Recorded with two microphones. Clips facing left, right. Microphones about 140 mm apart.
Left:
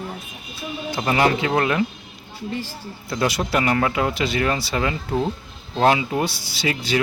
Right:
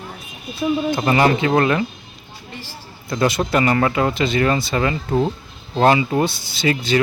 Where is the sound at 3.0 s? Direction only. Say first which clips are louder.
Right 4 dB; 5° left (ahead or behind).